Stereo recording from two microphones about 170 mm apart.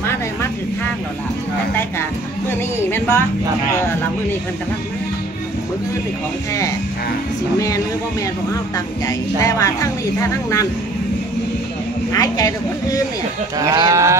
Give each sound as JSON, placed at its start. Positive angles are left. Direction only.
{"t": 2.5, "sound": "music", "side_deg": 15}
{"t": 7.5, "sound": "music", "side_deg": 20}
{"t": 12.1, "sound": "music", "side_deg": 20}
{"t": 13.6, "sound": "livestock", "side_deg": -20}